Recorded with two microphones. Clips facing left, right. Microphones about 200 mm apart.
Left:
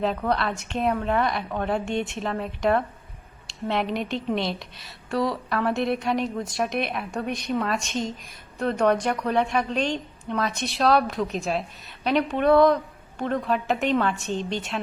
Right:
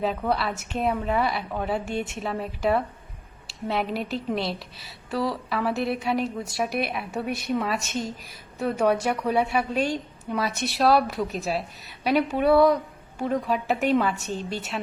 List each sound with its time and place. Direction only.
0.0 s a woman's voice: 5° right (ahead or behind)